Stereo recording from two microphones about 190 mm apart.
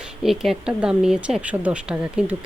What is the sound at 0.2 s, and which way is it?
Speech, centre (ahead or behind).